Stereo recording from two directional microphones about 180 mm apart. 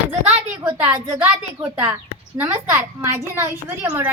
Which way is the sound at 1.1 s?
10° right (ahead or behind).